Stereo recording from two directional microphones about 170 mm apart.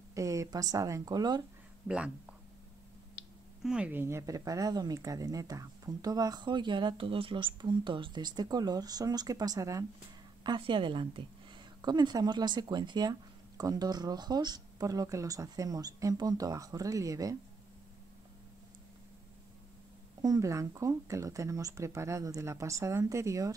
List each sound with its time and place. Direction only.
0.1 s speech: 20° right (ahead or behind)
1.9 s speech: 5° right (ahead or behind)
3.6 s speech: 5° right (ahead or behind)
20.2 s speech: 20° right (ahead or behind)